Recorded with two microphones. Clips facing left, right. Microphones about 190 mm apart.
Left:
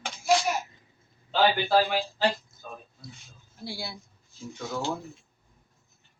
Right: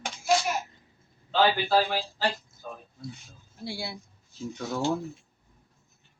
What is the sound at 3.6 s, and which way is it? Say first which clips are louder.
Speech: right 2 dB; 25° right (ahead or behind).